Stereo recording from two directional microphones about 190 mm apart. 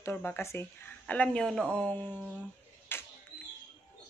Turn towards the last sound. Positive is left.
turn(degrees=10)  # may be behind; listen again after turning